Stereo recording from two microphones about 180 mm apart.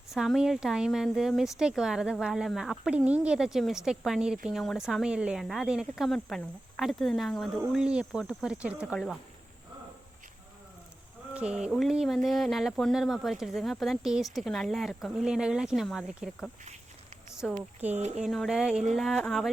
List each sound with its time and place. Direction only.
0.1 s speech: centre (ahead or behind)
11.3 s speech: 5° right (ahead or behind)
17.9 s speech: 40° right (ahead or behind)
18.2 s speech: centre (ahead or behind)